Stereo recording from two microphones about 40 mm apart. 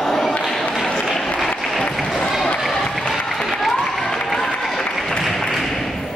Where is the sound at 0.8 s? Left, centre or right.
Centre.